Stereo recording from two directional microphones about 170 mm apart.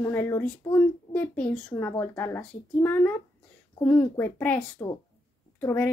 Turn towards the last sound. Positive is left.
turn(degrees=15)  # may be behind; listen again after turning